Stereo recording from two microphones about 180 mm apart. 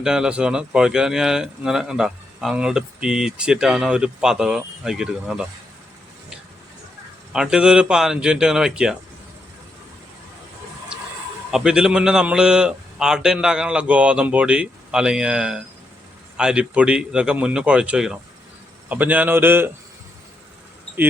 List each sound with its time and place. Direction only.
0.0 s speech: 5° right (ahead or behind)
7.3 s speech: 5° right (ahead or behind)
11.5 s a man's voice: 5° right (ahead or behind)